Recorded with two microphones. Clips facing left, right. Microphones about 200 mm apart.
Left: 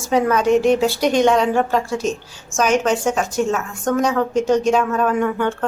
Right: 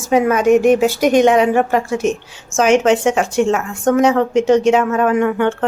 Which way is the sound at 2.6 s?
90° right.